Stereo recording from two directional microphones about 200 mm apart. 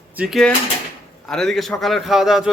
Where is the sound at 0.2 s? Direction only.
Centre (ahead or behind).